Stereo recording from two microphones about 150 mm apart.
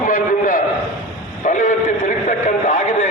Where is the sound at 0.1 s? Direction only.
65° left (ahead or behind).